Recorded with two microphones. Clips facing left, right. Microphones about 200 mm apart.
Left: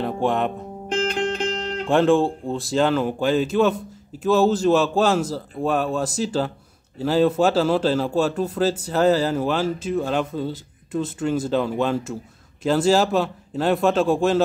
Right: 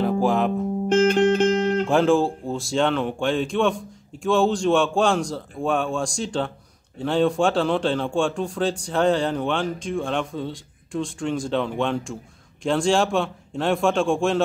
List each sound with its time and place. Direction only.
0.0 s music: centre (ahead or behind)
0.9 s music: 45° right (ahead or behind)
1.9 s a man's voice: centre (ahead or behind)